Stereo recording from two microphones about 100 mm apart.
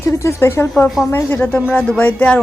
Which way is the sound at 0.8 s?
Centre (ahead or behind).